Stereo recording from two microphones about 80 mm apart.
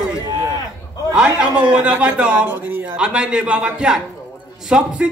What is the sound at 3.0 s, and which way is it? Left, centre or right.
A man's voice, centre.